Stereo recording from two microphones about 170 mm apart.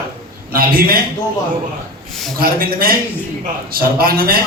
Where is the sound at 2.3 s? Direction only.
60° right (ahead or behind).